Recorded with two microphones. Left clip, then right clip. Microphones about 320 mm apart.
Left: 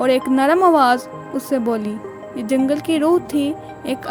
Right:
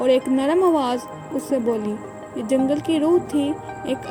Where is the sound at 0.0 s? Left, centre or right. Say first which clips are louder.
Left 3 dB; left.